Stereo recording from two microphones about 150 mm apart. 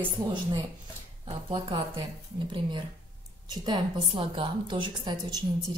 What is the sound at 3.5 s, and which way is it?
A woman's voice, 30° right (ahead or behind).